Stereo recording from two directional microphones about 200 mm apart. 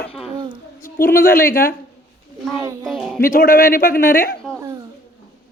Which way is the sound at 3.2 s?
45° left (ahead or behind).